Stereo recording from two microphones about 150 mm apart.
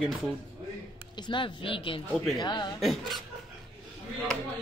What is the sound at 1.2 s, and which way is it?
Speech, 30° left (ahead or behind).